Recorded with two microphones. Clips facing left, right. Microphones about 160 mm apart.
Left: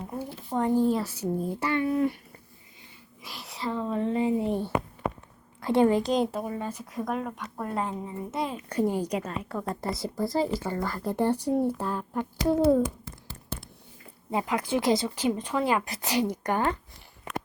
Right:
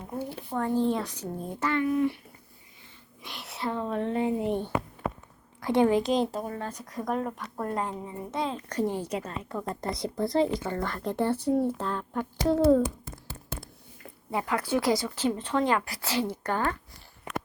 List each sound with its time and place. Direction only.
0.5 s speech: 15° left (ahead or behind)
0.9 s speech: 5° left (ahead or behind)
1.8 s speech: 35° left (ahead or behind)
3.2 s speech: centre (ahead or behind)
9.8 s speech: 5° left (ahead or behind)
14.3 s speech: 20° left (ahead or behind)